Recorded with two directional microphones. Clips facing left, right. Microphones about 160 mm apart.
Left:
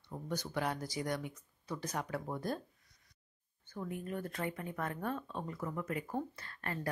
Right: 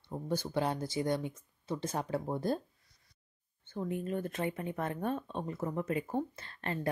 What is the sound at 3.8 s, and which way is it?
Speech, 25° right (ahead or behind).